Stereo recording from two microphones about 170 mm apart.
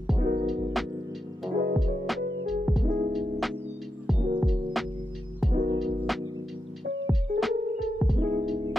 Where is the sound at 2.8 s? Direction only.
50° right (ahead or behind).